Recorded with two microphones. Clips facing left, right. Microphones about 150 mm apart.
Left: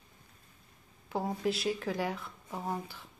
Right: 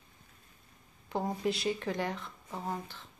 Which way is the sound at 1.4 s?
Centre (ahead or behind).